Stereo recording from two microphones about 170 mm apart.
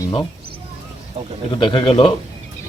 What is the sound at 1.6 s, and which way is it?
Speech, 30° left (ahead or behind).